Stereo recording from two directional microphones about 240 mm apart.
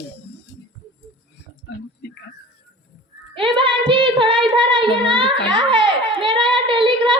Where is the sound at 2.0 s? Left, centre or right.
Left.